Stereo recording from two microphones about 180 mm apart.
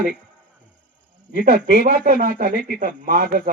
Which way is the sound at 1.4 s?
55° right (ahead or behind).